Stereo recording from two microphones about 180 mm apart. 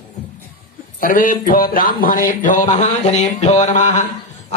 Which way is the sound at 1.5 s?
50° left (ahead or behind).